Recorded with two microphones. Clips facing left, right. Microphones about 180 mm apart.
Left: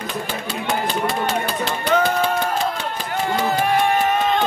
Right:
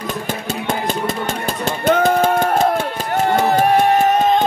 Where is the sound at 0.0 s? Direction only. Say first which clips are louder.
Right 3 dB; 45° right (ahead or behind).